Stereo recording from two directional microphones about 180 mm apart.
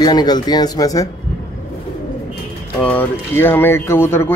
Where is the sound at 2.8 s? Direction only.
10° left (ahead or behind).